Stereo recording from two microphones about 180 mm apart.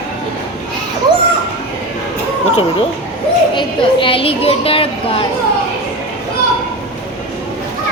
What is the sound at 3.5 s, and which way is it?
Speech, 30° left (ahead or behind).